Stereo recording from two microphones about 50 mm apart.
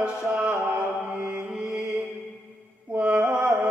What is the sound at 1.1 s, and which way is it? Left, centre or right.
Mantra, right.